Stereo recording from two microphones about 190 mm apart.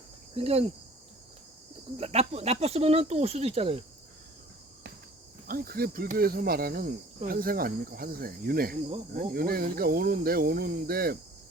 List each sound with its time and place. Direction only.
0.3 s speech: 30° right (ahead or behind)
2.0 s speech: 35° right (ahead or behind)
5.5 s speech: 50° right (ahead or behind)